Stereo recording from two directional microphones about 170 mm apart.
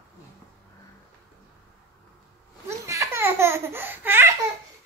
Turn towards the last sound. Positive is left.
turn(degrees=-15)  # may be behind; listen again after turning